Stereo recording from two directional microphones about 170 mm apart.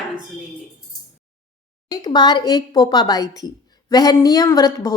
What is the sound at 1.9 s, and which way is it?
A woman's voice, 25° left (ahead or behind).